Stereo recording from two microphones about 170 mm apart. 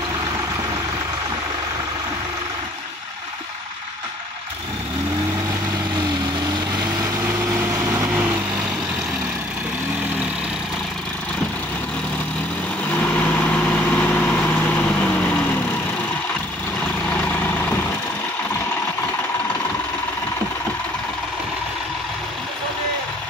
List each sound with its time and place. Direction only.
13.0 s vehicle: 10° left (ahead or behind)
16.8 s vehicle: 10° left (ahead or behind)